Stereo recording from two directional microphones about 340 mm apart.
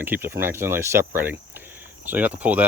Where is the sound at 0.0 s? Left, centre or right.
Centre.